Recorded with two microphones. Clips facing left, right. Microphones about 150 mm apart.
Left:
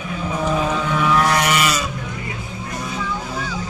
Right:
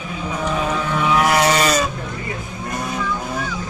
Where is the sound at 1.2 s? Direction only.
30° right (ahead or behind).